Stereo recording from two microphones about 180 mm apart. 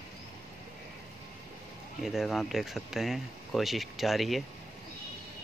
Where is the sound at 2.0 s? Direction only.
Centre (ahead or behind).